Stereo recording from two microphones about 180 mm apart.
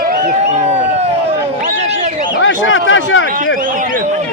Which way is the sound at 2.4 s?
90° left.